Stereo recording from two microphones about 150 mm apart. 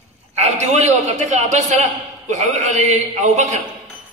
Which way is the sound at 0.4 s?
50° right (ahead or behind).